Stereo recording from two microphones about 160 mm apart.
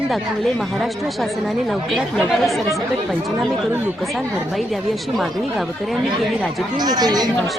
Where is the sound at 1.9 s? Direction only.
Centre (ahead or behind).